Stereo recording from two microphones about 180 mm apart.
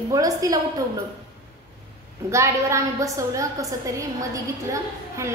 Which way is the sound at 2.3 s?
15° right (ahead or behind).